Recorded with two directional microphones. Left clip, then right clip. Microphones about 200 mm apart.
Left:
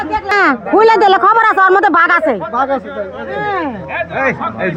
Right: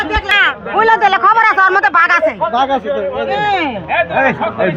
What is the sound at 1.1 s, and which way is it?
Speech, 45° left (ahead or behind).